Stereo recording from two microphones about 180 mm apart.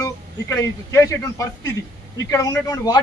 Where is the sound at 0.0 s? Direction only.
20° left (ahead or behind).